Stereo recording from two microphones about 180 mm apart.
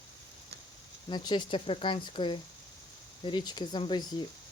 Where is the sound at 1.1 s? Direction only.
25° left (ahead or behind).